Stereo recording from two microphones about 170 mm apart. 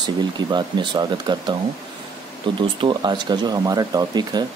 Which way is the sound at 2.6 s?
30° right (ahead or behind).